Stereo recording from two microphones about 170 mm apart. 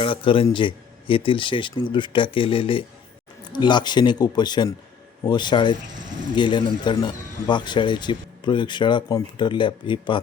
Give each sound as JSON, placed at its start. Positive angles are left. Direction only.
{"t": 0.0, "sound": "speech", "side_deg": 30}